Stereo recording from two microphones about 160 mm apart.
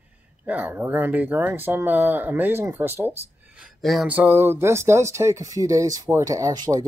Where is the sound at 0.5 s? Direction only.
10° right (ahead or behind).